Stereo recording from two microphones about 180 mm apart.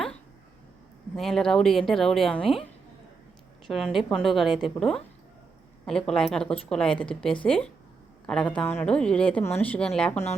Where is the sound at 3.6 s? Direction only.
Centre (ahead or behind).